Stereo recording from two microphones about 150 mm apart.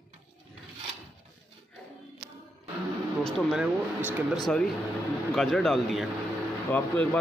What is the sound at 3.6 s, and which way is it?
Speech, 10° right (ahead or behind).